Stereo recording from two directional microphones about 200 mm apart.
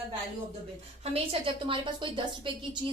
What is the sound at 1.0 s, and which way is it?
A woman's voice, 30° right (ahead or behind).